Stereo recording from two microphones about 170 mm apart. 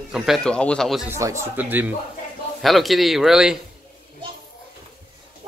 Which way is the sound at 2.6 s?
Centre (ahead or behind).